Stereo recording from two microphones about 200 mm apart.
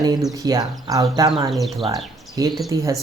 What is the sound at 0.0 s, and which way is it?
Speech, 20° right (ahead or behind).